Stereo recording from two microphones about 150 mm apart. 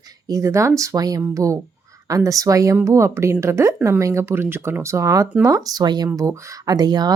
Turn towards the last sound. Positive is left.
turn(degrees=-25)  # may be behind; listen again after turning